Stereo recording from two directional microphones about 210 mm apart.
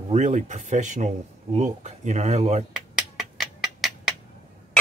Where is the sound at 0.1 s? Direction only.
35° right (ahead or behind).